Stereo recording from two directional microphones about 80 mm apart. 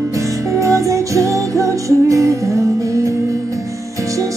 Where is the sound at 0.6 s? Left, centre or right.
Right.